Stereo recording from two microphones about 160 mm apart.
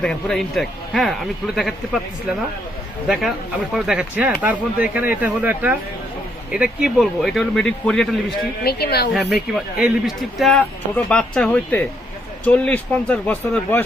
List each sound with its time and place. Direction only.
0.0 s speech: 5° left (ahead or behind)
3.1 s speech: centre (ahead or behind)
8.6 s speech: 80° left
9.3 s speech: 5° right (ahead or behind)